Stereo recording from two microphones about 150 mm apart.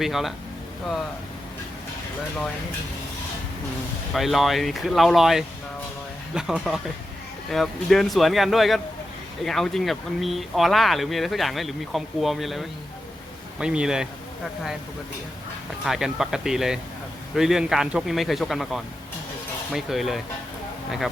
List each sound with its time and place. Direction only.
0.0 s speech: centre (ahead or behind)
4.1 s speech: centre (ahead or behind)
15.8 s speech: centre (ahead or behind)